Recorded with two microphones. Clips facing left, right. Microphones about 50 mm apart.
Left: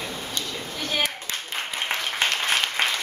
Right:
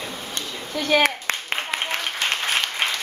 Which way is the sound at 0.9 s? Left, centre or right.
Right.